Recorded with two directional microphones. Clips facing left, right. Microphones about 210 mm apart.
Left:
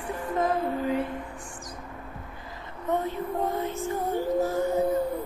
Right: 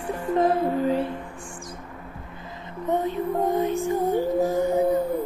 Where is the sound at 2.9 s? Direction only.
15° right (ahead or behind).